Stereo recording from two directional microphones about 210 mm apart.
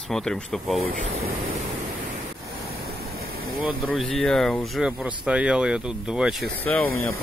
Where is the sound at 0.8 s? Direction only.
30° right (ahead or behind).